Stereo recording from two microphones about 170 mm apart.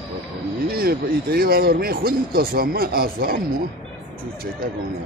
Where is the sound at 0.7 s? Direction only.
60° right (ahead or behind).